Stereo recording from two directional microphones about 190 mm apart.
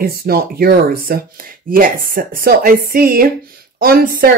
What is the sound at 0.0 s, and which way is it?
Speech, 50° right (ahead or behind).